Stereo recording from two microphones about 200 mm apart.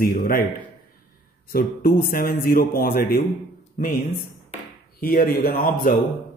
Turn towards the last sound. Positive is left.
turn(degrees=45)  # may be behind; listen again after turning